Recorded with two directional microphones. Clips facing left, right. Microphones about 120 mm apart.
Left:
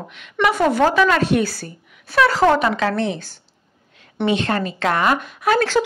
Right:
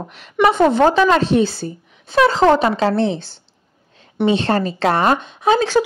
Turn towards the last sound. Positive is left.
turn(degrees=-20)  # may be behind; listen again after turning